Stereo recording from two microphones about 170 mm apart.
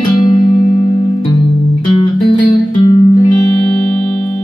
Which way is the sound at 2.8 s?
30° left (ahead or behind).